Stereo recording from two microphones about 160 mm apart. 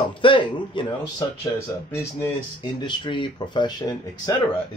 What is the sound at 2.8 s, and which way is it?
Speech, 30° left (ahead or behind).